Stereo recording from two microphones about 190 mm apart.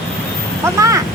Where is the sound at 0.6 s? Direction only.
15° right (ahead or behind).